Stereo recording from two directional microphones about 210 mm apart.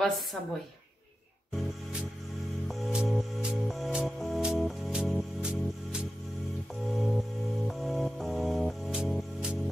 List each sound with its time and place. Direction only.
2.7 s music: centre (ahead or behind)